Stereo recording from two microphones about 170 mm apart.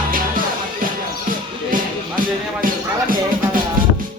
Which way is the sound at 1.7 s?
55° right (ahead or behind).